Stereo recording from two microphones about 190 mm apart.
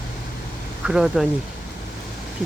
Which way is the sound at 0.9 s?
5° right (ahead or behind).